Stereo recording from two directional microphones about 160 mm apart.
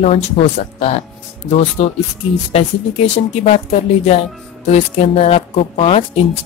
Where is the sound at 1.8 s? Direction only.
40° left (ahead or behind).